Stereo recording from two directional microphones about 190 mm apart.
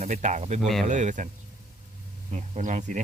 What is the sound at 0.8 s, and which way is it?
Speech, 40° right (ahead or behind).